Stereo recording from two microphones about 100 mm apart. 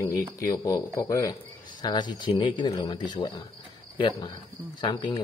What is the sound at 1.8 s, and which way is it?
Speech, 45° left (ahead or behind).